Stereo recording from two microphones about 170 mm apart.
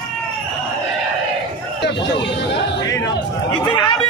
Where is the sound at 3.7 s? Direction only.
25° left (ahead or behind).